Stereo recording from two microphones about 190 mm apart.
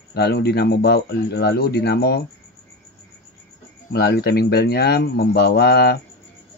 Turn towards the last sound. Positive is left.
turn(degrees=60)  # may be behind; listen again after turning